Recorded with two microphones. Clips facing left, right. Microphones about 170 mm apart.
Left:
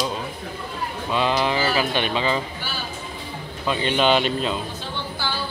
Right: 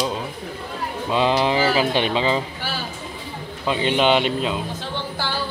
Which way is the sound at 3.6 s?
20° right (ahead or behind).